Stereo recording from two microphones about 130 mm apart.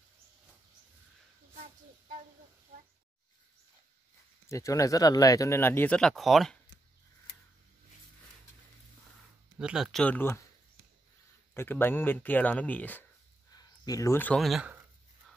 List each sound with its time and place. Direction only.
4.5 s speech: 25° left (ahead or behind)
5.9 s speech: 5° left (ahead or behind)
9.6 s speech: 5° right (ahead or behind)
10.0 s speech: 15° left (ahead or behind)
11.5 s speech: 15° left (ahead or behind)
13.6 s a sound: 30° left (ahead or behind)
14.2 s speech: 5° left (ahead or behind)